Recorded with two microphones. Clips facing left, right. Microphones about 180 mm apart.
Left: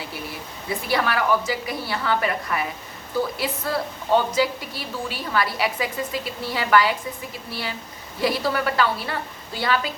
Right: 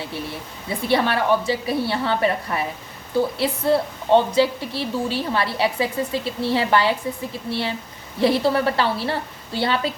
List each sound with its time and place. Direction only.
0.7 s a woman's voice: 25° right (ahead or behind)
8.2 s a woman's voice: 25° right (ahead or behind)